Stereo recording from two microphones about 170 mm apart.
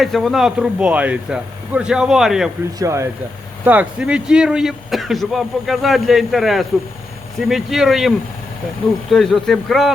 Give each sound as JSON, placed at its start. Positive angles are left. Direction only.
{"t": 0.0, "sound": "speech", "side_deg": 0}
{"t": 2.7, "sound": "speech", "side_deg": -20}